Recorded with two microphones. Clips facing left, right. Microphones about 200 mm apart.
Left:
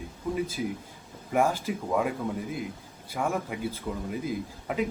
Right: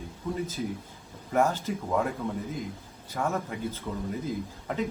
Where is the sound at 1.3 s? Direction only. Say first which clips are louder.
Even; 10° left (ahead or behind).